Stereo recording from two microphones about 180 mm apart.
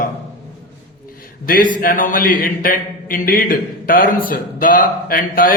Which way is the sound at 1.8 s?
50° left (ahead or behind).